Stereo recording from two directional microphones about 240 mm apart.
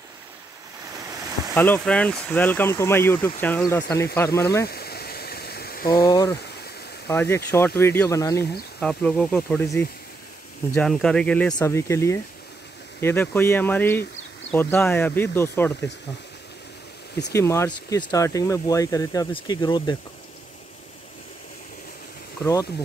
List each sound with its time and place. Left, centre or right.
1.5 s speech: centre
4.6 s a sound: left
6.0 s speech: centre
17.3 s speech: centre
22.4 s speech: centre